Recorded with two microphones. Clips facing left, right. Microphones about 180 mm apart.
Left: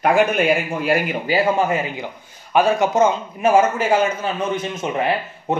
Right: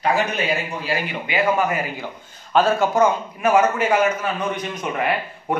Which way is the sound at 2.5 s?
15° left (ahead or behind).